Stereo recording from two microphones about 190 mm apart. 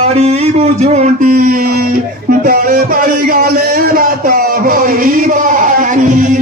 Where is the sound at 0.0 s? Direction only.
35° right (ahead or behind).